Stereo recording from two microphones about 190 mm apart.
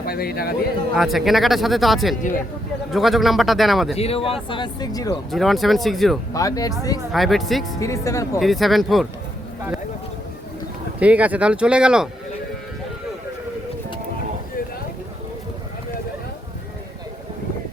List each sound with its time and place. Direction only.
0.0 s a man's voice: 55° left (ahead or behind)
0.9 s speech: centre (ahead or behind)
3.9 s speech: 30° left (ahead or behind)
5.3 s speech: centre (ahead or behind)
6.3 s speech: 20° left (ahead or behind)
7.1 s speech: centre (ahead or behind)
7.8 s speech: 15° left (ahead or behind)
8.4 s speech: centre (ahead or behind)
11.0 s speech: 5° right (ahead or behind)